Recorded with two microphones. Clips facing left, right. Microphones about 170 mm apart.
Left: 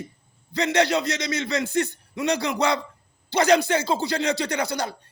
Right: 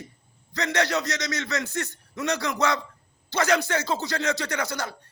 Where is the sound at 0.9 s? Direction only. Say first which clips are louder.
Left 3 dB; 30° left (ahead or behind).